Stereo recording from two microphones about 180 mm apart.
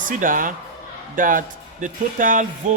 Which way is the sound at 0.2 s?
50° right (ahead or behind).